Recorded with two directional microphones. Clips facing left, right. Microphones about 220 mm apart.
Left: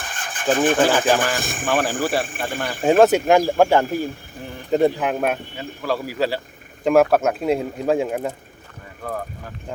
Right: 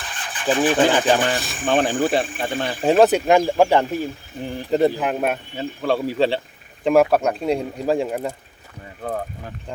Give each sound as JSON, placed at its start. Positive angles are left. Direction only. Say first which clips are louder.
{"t": 0.0, "sound": "rub", "louder": "left 1 dB", "side_deg": 45}
{"t": 0.5, "sound": "speech", "louder": "even", "side_deg": 45}
{"t": 1.6, "sound": "speech", "louder": "right 3 dB", "side_deg": -25}
{"t": 2.8, "sound": "speech", "louder": "left 1 dB", "side_deg": 0}
{"t": 5.5, "sound": "speech", "louder": "right 3 dB", "side_deg": -25}
{"t": 6.8, "sound": "speech", "louder": "even", "side_deg": 0}
{"t": 9.0, "sound": "speech", "louder": "right 2 dB", "side_deg": -25}